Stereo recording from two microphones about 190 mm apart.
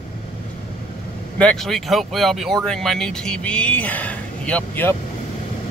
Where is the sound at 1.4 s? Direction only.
5° left (ahead or behind).